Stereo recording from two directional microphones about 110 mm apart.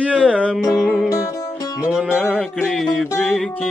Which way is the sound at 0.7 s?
5° right (ahead or behind).